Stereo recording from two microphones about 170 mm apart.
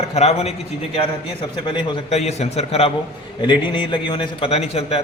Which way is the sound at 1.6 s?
35° left (ahead or behind).